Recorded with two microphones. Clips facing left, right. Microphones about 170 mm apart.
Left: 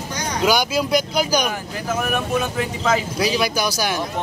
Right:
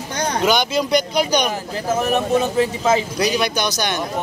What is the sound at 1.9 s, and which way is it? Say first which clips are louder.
Speech: right 4 dB; 25° right (ahead or behind).